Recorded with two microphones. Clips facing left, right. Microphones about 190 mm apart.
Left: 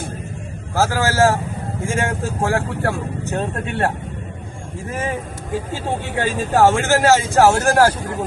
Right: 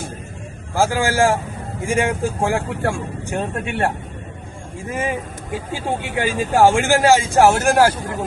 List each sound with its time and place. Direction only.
0.8 s speech: 15° right (ahead or behind)